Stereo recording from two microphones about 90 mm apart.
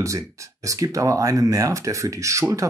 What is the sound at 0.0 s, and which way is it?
Speech, 35° right (ahead or behind).